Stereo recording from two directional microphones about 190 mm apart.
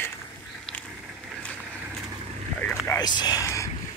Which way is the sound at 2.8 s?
20° left (ahead or behind).